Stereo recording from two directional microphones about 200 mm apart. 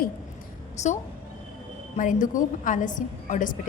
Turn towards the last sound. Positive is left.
turn(degrees=40)  # may be behind; listen again after turning